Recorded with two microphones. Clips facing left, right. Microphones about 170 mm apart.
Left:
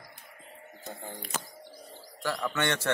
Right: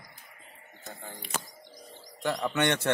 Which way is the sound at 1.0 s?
15° left (ahead or behind).